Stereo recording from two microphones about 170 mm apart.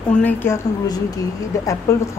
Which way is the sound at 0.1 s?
10° left (ahead or behind).